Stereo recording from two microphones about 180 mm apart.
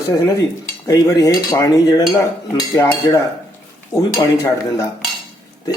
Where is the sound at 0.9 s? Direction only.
20° left (ahead or behind).